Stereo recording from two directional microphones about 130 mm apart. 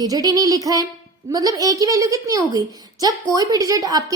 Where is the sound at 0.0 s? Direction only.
30° right (ahead or behind).